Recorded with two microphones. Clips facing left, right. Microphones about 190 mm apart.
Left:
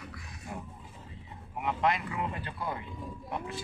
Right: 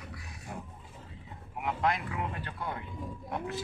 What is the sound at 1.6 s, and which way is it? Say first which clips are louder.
Speech: left 1 dB; centre (ahead or behind).